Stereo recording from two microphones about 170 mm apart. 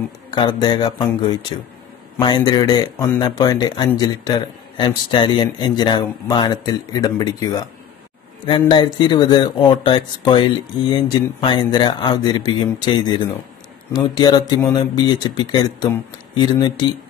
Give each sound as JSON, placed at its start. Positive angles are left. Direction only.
{"t": 0.3, "sound": "speech", "side_deg": 25}